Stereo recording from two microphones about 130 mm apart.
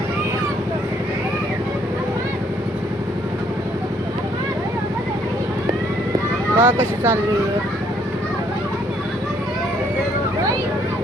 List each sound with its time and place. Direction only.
6.6 s speech: 15° right (ahead or behind)